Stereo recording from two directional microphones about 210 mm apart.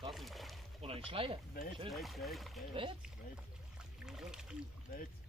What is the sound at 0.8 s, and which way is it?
Speech, 25° right (ahead or behind).